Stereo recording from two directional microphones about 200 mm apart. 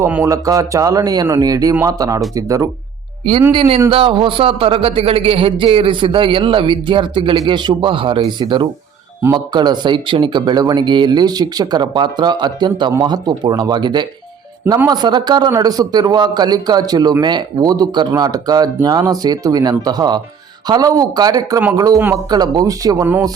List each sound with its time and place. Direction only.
0.0 s a man's voice: 10° right (ahead or behind)